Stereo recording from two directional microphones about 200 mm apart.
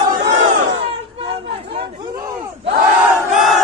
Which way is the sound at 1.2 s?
25° right (ahead or behind).